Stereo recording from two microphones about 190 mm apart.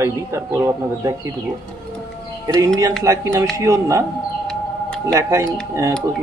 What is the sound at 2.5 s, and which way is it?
A man's voice, 15° right (ahead or behind).